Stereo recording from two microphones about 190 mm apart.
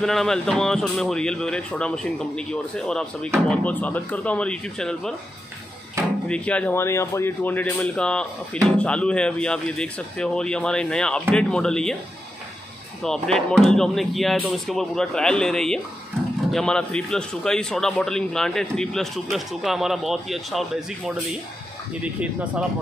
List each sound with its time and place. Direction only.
0.0 s speech: centre (ahead or behind)
6.2 s speech: 5° left (ahead or behind)
13.0 s speech: 5° left (ahead or behind)